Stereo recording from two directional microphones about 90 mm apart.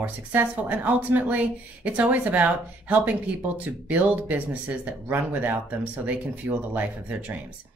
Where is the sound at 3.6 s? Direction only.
15° right (ahead or behind).